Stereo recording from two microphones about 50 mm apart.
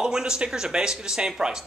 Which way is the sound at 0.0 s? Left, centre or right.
Centre.